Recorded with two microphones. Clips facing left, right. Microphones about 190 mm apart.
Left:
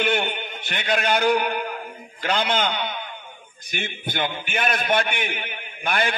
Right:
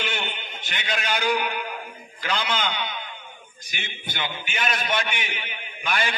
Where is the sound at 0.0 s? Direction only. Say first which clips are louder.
Left 8 dB; 55° left (ahead or behind).